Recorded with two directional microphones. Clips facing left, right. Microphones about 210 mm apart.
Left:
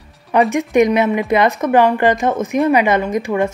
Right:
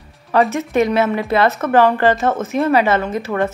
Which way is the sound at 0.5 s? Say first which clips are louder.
Left 3 dB; 15° left (ahead or behind).